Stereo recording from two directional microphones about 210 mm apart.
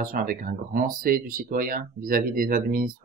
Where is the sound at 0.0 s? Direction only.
45° right (ahead or behind).